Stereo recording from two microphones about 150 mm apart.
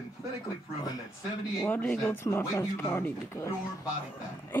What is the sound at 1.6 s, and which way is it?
Speech, 10° left (ahead or behind).